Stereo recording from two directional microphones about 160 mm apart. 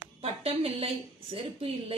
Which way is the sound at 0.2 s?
40° right (ahead or behind).